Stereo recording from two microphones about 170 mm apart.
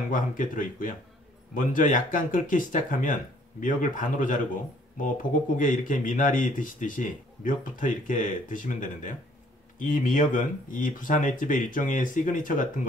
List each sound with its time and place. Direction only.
0.1 s speech: 50° left (ahead or behind)